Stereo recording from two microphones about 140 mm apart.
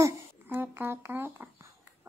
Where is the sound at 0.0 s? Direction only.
15° right (ahead or behind).